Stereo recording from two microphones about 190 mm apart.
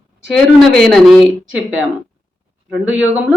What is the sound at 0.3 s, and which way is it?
Speech, 5° left (ahead or behind).